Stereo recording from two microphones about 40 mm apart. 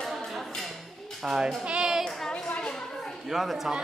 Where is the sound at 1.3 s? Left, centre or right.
Centre.